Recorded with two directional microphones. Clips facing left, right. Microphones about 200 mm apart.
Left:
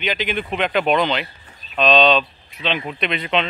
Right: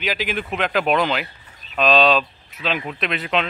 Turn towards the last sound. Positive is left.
turn(degrees=-5)  # may be behind; listen again after turning